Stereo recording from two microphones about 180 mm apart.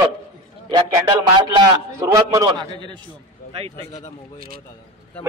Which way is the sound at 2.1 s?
20° right (ahead or behind).